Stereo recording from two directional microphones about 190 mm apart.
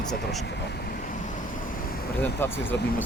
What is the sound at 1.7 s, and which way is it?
Vehicle, 50° left (ahead or behind).